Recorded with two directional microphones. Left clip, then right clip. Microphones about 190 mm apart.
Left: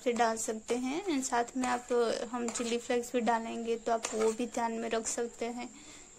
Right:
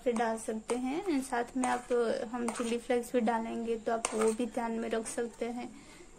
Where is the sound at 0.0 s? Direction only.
25° left (ahead or behind).